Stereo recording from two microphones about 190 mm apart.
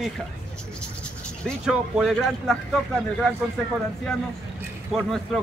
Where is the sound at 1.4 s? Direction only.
Centre (ahead or behind).